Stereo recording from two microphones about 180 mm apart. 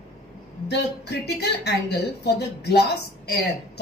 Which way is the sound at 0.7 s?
70° left (ahead or behind).